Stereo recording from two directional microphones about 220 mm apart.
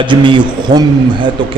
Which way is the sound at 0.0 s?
20° right (ahead or behind).